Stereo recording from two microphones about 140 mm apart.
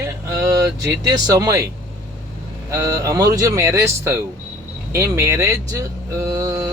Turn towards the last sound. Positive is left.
turn(degrees=-25)  # may be behind; listen again after turning